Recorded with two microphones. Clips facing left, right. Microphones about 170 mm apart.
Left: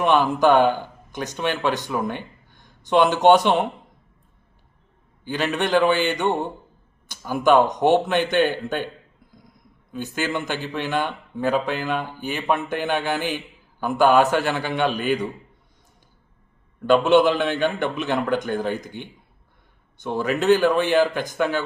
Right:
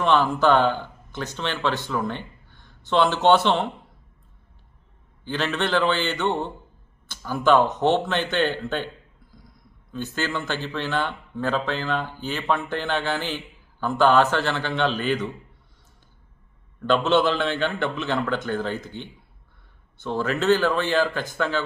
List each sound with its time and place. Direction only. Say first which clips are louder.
0.0 s speech: left 2 dB; 15° left (ahead or behind)
5.2 s a man's voice: left 2 dB; 10° left (ahead or behind)
9.9 s a man's voice: left 2 dB; 15° left (ahead or behind)
16.8 s a man's voice: left 4 dB; 15° left (ahead or behind)